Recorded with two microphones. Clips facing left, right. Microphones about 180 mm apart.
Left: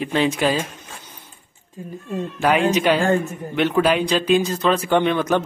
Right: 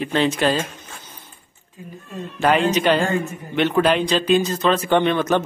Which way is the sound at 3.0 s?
50° left (ahead or behind).